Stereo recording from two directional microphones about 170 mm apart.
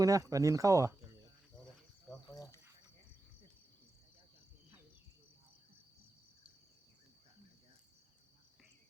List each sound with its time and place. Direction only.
0.0 s speech: 20° right (ahead or behind)
2.2 s insect: 20° left (ahead or behind)